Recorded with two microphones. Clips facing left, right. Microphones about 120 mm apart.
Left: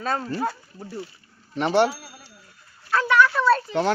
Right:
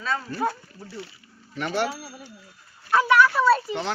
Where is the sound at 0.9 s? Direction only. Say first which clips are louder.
Left 4 dB; 80° right.